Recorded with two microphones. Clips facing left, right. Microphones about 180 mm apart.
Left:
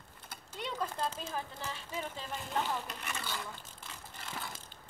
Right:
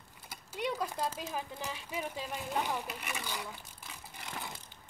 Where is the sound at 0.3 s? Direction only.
10° right (ahead or behind).